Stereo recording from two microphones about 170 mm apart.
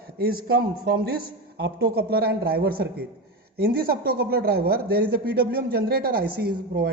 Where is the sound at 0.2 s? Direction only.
60° right (ahead or behind).